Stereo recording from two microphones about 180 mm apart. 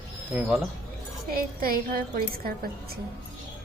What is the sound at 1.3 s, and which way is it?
Speech, 55° right (ahead or behind).